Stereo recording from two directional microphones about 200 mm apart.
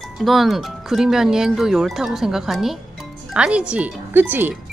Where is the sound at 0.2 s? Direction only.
Centre (ahead or behind).